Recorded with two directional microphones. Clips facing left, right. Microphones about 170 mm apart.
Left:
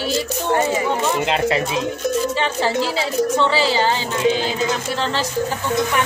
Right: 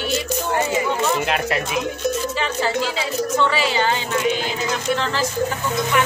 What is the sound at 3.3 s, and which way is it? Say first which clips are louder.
Speech: even; 30° left (ahead or behind).